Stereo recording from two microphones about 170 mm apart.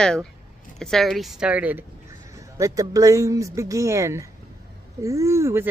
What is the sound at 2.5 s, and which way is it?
Speech, 20° right (ahead or behind).